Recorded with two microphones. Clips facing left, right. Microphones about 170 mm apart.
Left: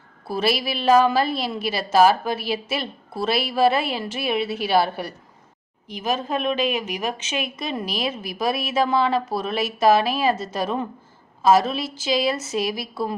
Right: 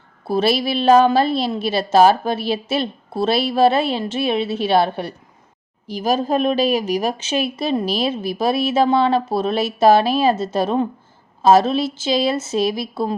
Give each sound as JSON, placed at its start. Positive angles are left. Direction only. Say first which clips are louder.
{"t": 0.3, "sound": "a woman's voice", "louder": "right 5 dB", "side_deg": -25}
{"t": 5.9, "sound": "a woman's voice", "louder": "right 6 dB", "side_deg": -35}